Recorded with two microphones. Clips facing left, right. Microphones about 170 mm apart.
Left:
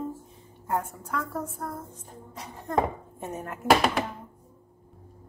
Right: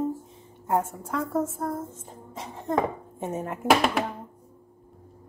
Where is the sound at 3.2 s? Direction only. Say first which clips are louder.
Right 5 dB; 25° right (ahead or behind).